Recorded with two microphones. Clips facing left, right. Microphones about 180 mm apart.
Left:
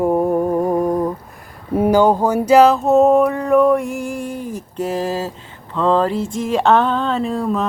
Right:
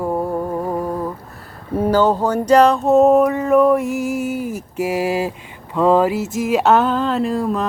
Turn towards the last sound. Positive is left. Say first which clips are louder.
# even
turn(degrees=0)  # may be behind; listen again after turning